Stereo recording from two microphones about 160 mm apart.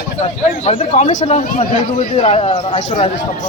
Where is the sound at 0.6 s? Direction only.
40° left (ahead or behind).